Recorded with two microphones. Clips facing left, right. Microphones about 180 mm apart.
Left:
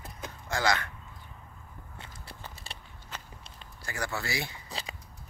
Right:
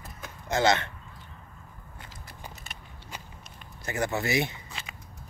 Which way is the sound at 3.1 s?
10° right (ahead or behind).